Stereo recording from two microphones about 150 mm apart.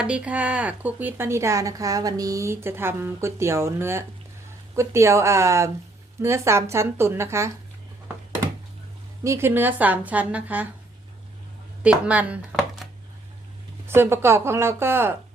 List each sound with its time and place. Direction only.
0.0 s a woman's voice: 10° right (ahead or behind)
9.2 s a woman's voice: 20° right (ahead or behind)
11.8 s a woman's voice: 10° right (ahead or behind)